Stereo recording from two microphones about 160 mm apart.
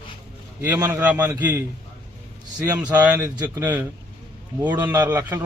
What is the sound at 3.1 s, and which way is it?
A man's voice, 20° right (ahead or behind).